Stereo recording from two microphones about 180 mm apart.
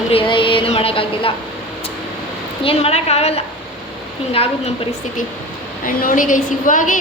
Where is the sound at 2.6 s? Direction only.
30° left (ahead or behind).